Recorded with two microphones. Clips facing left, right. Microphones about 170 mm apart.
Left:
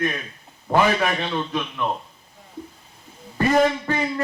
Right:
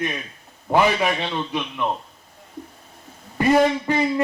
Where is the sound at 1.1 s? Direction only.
15° right (ahead or behind).